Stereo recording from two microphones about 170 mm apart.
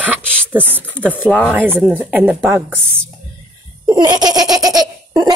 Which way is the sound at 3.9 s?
25° right (ahead or behind).